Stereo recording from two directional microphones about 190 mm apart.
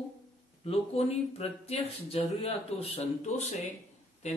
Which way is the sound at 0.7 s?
30° left (ahead or behind).